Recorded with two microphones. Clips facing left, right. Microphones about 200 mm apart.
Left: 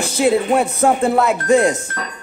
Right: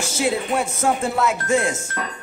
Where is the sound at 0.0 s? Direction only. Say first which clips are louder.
Left 7 dB; 60° left (ahead or behind).